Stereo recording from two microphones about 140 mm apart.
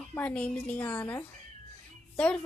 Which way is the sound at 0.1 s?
10° left (ahead or behind).